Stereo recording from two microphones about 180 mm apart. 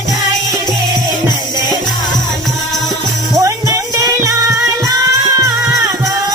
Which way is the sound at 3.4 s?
15° right (ahead or behind).